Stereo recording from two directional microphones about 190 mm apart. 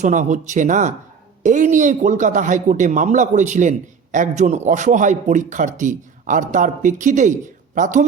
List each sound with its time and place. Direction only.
0.0 s speech: 40° right (ahead or behind)